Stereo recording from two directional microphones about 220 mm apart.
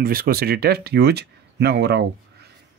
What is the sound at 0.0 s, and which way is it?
Speech, 40° right (ahead or behind).